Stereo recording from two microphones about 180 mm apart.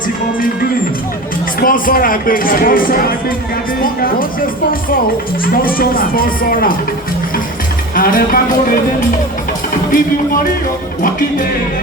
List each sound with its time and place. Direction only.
1.5 s speech: 50° left (ahead or behind)
7.9 s speech: 50° left (ahead or behind)
11.0 s speech: 50° left (ahead or behind)